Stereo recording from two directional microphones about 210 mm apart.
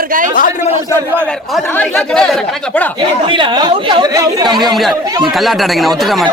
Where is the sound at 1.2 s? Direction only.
5° left (ahead or behind).